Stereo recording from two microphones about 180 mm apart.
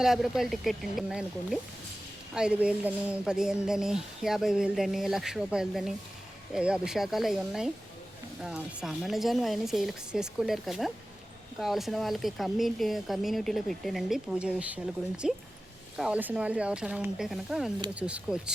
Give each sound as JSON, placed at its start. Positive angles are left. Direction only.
{"t": 0.0, "sound": "speech", "side_deg": 0}